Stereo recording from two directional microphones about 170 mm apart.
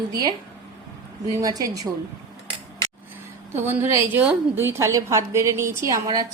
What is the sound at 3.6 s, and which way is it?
A woman's voice, 15° right (ahead or behind).